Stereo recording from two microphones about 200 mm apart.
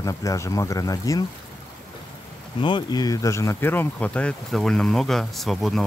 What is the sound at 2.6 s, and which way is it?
Speech, 20° left (ahead or behind).